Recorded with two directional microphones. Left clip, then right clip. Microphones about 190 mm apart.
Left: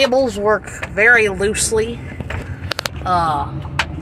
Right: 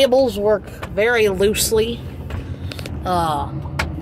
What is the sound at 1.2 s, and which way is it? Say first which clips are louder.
Speech: right 1 dB; 25° right (ahead or behind).